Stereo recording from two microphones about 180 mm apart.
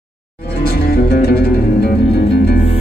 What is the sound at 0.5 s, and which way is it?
Music, 60° left (ahead or behind).